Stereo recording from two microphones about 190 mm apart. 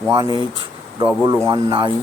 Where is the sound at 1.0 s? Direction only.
20° right (ahead or behind).